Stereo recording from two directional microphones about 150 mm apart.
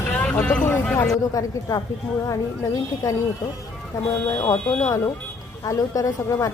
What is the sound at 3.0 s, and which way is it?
Speech, 20° left (ahead or behind).